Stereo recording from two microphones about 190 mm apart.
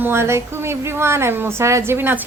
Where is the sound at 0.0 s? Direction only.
15° right (ahead or behind).